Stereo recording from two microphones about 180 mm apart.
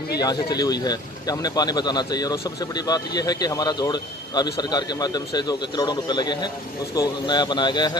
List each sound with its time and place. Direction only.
0.2 s speech: 20° left (ahead or behind)